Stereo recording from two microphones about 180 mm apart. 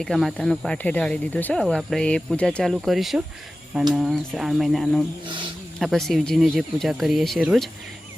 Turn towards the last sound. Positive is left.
turn(degrees=0)  # may be behind; listen again after turning